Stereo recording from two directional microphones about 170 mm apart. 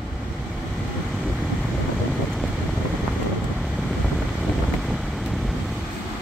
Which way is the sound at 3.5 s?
5° right (ahead or behind).